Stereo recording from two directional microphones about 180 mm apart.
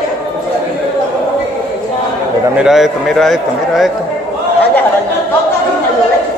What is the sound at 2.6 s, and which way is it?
A man's voice, centre (ahead or behind).